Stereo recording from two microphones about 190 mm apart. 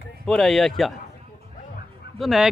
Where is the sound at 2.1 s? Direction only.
Centre (ahead or behind).